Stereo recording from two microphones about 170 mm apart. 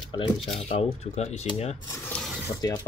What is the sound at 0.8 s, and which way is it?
Speech, 40° left (ahead or behind).